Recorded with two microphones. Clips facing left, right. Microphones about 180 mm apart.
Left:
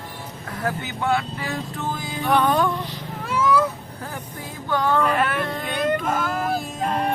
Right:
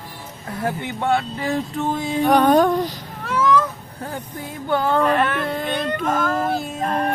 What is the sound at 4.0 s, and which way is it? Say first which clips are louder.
Speech: right 5 dB; 30° right (ahead or behind).